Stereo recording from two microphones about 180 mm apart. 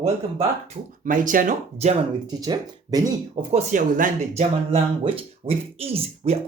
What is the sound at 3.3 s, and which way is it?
Speech, 40° right (ahead or behind).